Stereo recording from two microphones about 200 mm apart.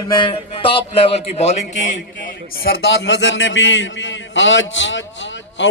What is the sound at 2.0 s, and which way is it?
A man's voice, 45° left (ahead or behind).